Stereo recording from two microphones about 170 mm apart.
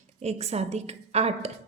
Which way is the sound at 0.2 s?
40° right (ahead or behind).